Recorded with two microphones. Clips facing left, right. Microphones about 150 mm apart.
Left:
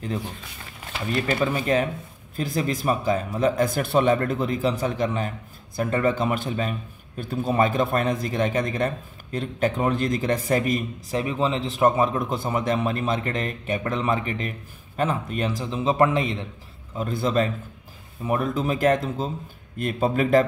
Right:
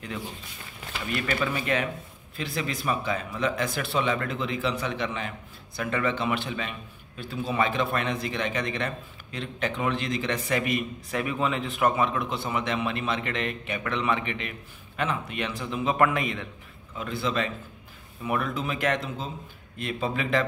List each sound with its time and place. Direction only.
1.1 s a man's voice: 35° left (ahead or behind)
16.9 s a man's voice: 40° left (ahead or behind)